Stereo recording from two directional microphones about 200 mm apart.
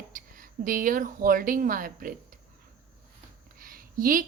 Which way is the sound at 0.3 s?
45° right (ahead or behind).